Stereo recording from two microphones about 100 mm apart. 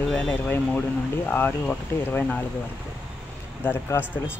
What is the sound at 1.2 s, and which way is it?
Speech, 20° left (ahead or behind).